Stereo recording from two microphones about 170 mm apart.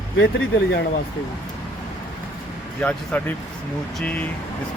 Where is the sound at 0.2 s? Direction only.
80° left.